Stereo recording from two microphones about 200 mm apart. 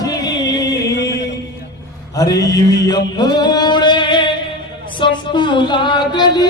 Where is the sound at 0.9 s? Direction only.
55° left (ahead or behind).